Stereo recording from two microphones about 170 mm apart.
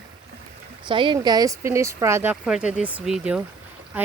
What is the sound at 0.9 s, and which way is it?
Speech, 30° right (ahead or behind).